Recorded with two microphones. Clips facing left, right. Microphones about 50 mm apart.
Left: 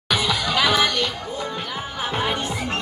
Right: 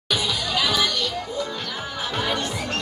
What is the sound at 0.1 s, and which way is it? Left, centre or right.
Music, left.